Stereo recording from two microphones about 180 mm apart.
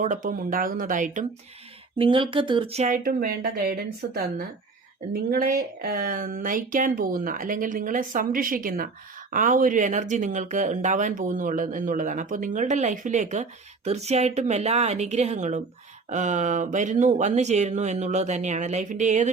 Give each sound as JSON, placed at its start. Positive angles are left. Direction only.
{"t": 0.0, "sound": "speech", "side_deg": -45}
{"t": 2.0, "sound": "speech", "side_deg": -30}